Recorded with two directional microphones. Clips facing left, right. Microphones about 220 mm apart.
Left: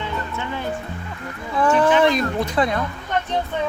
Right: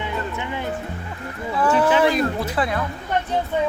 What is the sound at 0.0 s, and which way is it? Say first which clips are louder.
Music: right 1 dB; 15° right (ahead or behind).